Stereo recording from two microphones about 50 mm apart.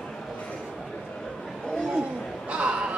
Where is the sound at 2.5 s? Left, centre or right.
Centre.